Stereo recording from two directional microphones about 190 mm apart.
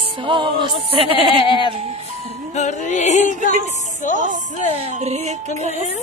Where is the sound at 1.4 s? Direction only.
25° left (ahead or behind).